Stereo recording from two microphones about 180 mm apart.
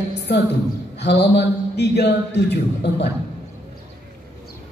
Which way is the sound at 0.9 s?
70° left (ahead or behind).